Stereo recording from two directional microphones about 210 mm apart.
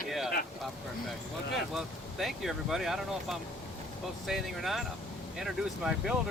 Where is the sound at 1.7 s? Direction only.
Centre (ahead or behind).